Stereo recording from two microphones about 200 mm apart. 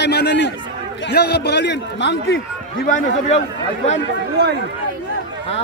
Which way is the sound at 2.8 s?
35° left (ahead or behind).